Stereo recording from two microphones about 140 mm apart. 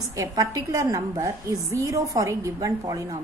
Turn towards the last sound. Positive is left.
turn(degrees=-25)  # may be behind; listen again after turning